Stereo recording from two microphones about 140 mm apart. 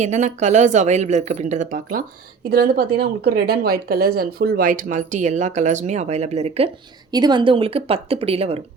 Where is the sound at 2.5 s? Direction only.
90° right; by 6.7 s 50° right (ahead or behind).